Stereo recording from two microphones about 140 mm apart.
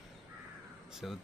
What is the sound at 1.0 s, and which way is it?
Speech, centre (ahead or behind).